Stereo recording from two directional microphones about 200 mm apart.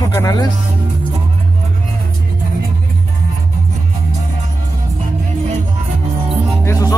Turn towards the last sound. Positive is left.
turn(degrees=15)  # may be behind; listen again after turning